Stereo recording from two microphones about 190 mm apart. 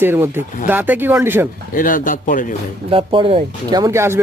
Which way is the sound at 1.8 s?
45° left (ahead or behind).